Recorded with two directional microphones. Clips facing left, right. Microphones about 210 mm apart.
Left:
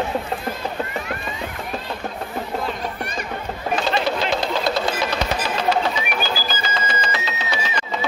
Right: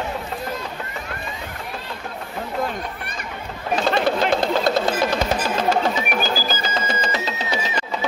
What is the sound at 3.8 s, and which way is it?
Music, 50° right (ahead or behind).